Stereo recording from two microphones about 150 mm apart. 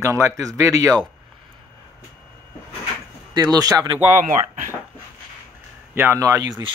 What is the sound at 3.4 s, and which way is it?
Speech, 25° right (ahead or behind).